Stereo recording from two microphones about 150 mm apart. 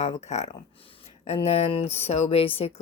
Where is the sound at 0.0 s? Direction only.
50° left (ahead or behind).